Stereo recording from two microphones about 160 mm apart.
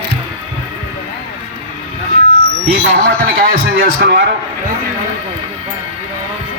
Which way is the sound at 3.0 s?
75° right (ahead or behind).